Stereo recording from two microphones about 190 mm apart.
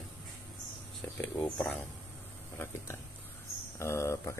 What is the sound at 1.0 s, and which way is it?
Speech, 5° left (ahead or behind).